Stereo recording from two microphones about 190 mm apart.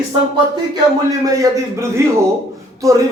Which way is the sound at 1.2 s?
15° right (ahead or behind).